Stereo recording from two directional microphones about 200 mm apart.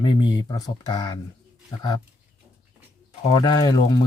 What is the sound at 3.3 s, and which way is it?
Speech, 20° left (ahead or behind).